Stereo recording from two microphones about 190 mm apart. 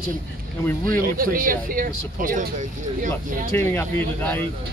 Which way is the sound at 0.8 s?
45° right (ahead or behind).